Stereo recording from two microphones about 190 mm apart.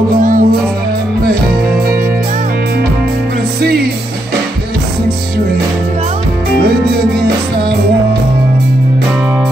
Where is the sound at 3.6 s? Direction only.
55° right (ahead or behind).